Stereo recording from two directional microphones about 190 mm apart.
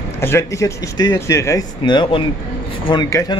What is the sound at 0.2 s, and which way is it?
A man's voice, 15° left (ahead or behind).